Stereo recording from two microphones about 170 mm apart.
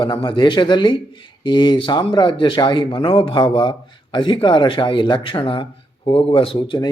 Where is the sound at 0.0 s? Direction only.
30° left (ahead or behind).